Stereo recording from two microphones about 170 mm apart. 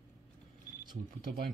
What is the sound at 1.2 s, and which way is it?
Speech, 60° right (ahead or behind).